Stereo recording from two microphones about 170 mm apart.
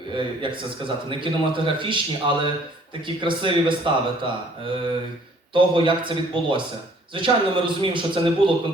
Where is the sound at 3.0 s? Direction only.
30° right (ahead or behind).